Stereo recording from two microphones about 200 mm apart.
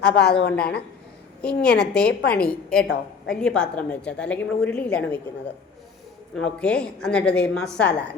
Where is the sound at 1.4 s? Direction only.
5° left (ahead or behind).